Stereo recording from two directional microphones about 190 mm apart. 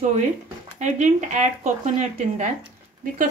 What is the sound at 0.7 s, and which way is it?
Speech, 40° right (ahead or behind).